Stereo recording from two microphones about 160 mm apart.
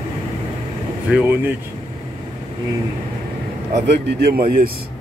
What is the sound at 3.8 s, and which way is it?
Speech, 90° right.